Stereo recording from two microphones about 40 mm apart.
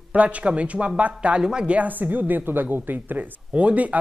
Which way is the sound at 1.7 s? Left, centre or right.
Right.